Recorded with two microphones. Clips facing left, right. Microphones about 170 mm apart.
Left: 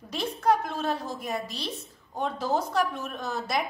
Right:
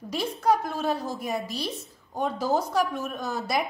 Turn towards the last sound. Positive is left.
turn(degrees=-10)  # may be behind; listen again after turning